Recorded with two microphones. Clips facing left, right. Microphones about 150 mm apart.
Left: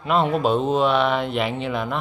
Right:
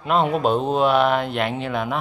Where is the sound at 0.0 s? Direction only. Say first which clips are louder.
Even; centre (ahead or behind).